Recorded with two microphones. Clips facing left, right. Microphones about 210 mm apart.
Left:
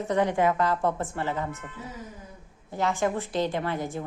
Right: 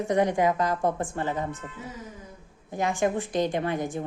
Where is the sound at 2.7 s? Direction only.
15° right (ahead or behind).